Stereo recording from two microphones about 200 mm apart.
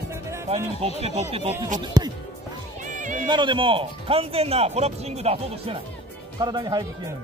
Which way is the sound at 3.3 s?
25° right (ahead or behind).